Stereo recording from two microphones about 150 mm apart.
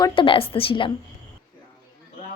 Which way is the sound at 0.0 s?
35° left (ahead or behind).